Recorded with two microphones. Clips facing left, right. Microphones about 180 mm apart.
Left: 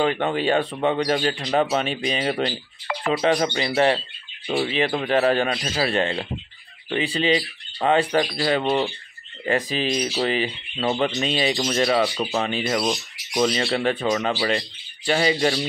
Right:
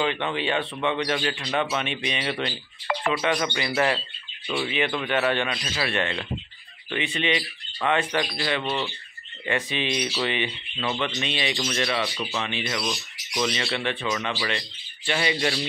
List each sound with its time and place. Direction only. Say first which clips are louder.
0.0 s speech: left 5 dB; 40° left (ahead or behind)